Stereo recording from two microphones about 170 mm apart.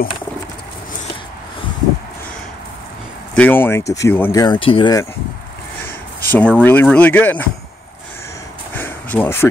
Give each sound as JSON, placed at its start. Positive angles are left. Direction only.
{"t": 3.3, "sound": "speech", "side_deg": 10}
{"t": 4.6, "sound": "speech", "side_deg": 30}
{"t": 6.2, "sound": "speech", "side_deg": 10}
{"t": 8.7, "sound": "a sound", "side_deg": 10}